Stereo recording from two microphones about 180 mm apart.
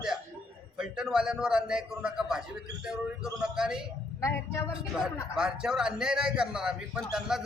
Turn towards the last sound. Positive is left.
turn(degrees=-5)  # may be behind; listen again after turning